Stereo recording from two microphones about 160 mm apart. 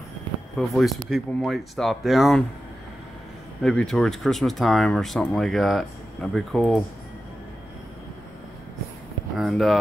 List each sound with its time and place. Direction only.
0.6 s speech: centre (ahead or behind)
3.6 s speech: 5° left (ahead or behind)
9.4 s speech: centre (ahead or behind)